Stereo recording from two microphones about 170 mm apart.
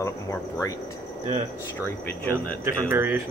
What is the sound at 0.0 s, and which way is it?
Speech, 15° left (ahead or behind).